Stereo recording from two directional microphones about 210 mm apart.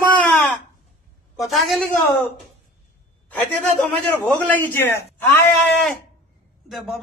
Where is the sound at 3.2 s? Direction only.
10° left (ahead or behind).